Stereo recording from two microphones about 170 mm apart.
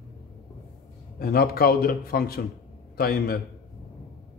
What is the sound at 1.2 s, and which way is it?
A man's voice, 65° left (ahead or behind).